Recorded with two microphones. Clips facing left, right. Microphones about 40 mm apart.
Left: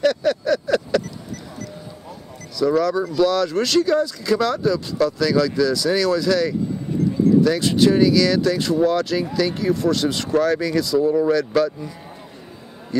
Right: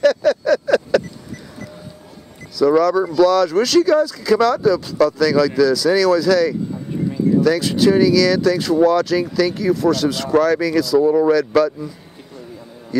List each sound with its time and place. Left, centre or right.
0.0 s vehicle: centre
2.6 s speech: centre
11.0 s speech: centre
11.3 s speech: centre